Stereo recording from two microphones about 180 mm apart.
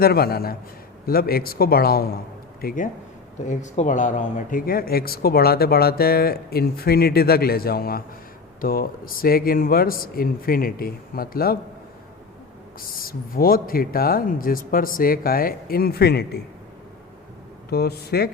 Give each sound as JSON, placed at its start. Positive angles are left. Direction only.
{"t": 0.0, "sound": "speech", "side_deg": 60}
{"t": 13.0, "sound": "speech", "side_deg": 55}
{"t": 17.7, "sound": "speech", "side_deg": 60}